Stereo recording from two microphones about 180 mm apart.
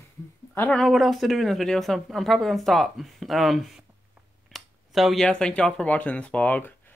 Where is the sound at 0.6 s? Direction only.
5° left (ahead or behind).